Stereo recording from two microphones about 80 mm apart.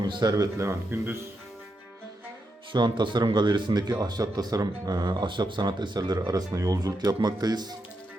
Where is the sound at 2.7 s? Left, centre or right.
Right.